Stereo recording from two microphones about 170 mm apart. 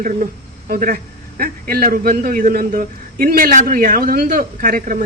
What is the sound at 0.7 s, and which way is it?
A man's voice, 50° right (ahead or behind).